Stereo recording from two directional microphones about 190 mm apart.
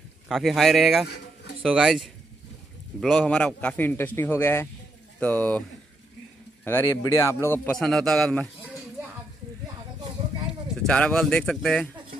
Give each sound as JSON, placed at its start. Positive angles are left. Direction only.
{"t": 0.3, "sound": "a man's voice", "side_deg": 0}
{"t": 6.6, "sound": "a man's voice", "side_deg": 10}
{"t": 10.8, "sound": "speech", "side_deg": 5}